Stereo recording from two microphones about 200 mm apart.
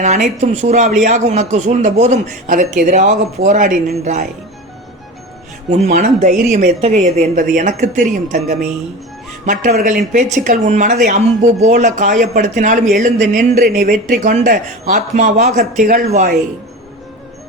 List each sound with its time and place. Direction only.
0.0 s speech: 35° right (ahead or behind)
5.7 s speech: 35° right (ahead or behind)